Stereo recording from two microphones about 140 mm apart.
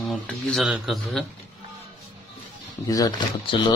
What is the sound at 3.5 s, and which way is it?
Speech, 35° left (ahead or behind).